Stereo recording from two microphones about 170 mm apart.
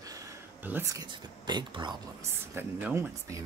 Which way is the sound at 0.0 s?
20° right (ahead or behind).